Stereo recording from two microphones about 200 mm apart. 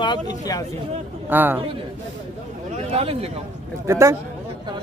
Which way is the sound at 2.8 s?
30° right (ahead or behind).